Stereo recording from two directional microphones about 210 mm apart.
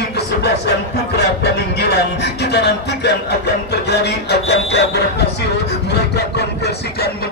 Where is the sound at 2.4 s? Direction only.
50° left (ahead or behind).